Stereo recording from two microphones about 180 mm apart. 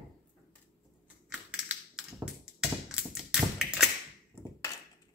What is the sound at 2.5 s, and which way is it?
Tap, 5° right (ahead or behind).